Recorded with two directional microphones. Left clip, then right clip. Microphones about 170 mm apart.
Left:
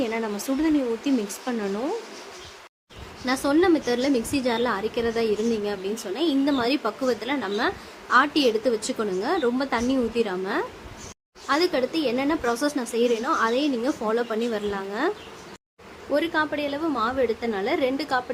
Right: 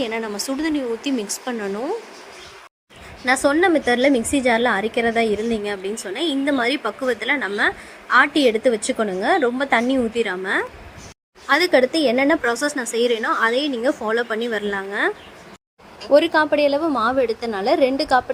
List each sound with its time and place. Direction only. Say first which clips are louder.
0.0 s speech: right 3 dB; 35° right (ahead or behind)
3.2 s a woman's voice: right 4 dB; 30° right (ahead or behind)
16.1 s a woman's voice: right 9 dB; 30° right (ahead or behind)